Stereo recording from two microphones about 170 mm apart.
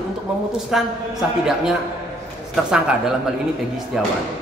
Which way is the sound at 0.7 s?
Centre (ahead or behind).